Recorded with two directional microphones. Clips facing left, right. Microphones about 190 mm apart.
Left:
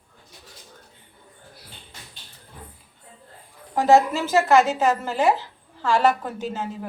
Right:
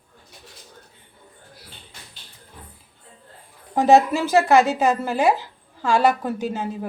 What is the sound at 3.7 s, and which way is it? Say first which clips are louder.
Speech: right 2 dB; 20° right (ahead or behind).